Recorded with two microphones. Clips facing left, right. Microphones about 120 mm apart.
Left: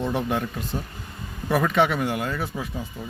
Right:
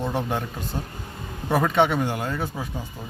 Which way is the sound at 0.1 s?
30° right (ahead or behind).